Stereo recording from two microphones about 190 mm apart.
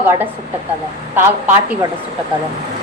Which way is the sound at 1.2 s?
10° right (ahead or behind).